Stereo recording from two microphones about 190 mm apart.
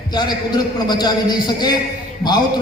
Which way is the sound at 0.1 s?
20° left (ahead or behind).